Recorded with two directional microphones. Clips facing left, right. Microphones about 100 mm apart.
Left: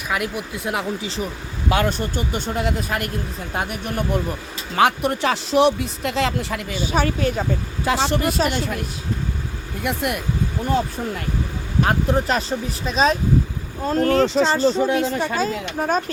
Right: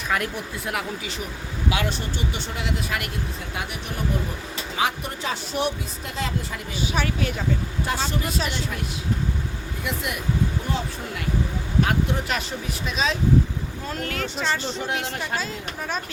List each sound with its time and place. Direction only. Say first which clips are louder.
0.1 s speech: left 2 dB; 5° left (ahead or behind)
0.5 s speech: left 4 dB; 20° left (ahead or behind)
1.7 s speech: left 9 dB; 50° left (ahead or behind); by 6.6 s 80° left
6.7 s speech: left 4 dB; 40° left (ahead or behind)
7.9 s speech: left 8 dB; 80° left; by 8.4 s 65° left (ahead or behind)
8.4 s speech: left 6 dB; 50° left (ahead or behind)
9.8 s speech: left 6 dB; 55° left (ahead or behind)
11.9 s speech: left 5 dB; 35° left (ahead or behind)